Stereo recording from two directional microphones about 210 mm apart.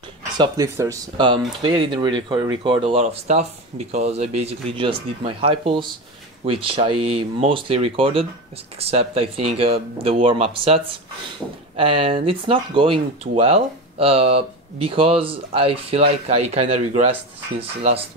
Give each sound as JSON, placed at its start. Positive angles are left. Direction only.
{"t": 0.4, "sound": "speech", "side_deg": -15}